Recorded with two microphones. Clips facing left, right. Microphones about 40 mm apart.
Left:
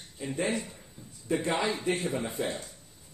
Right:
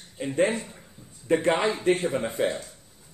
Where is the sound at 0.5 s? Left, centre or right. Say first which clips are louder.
Right 1 dB; right.